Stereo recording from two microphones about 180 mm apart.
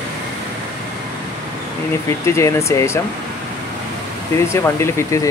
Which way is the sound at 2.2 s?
15° left (ahead or behind).